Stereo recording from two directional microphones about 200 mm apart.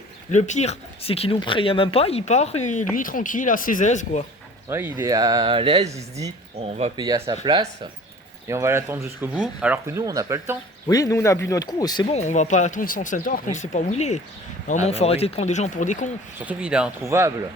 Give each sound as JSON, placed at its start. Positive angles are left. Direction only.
{"t": 0.3, "sound": "speech", "side_deg": 35}
{"t": 4.7, "sound": "speech", "side_deg": -10}
{"t": 7.0, "sound": "speech", "side_deg": -20}
{"t": 10.8, "sound": "speech", "side_deg": 15}
{"t": 12.1, "sound": "speech", "side_deg": 35}
{"t": 16.5, "sound": "speech", "side_deg": -5}